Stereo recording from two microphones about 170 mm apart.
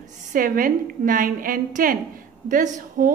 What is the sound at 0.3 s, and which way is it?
A woman's voice, 50° right (ahead or behind).